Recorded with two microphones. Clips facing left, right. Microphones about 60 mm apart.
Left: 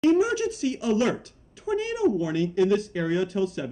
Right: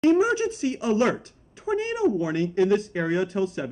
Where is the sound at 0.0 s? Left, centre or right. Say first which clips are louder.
Right 1 dB; right.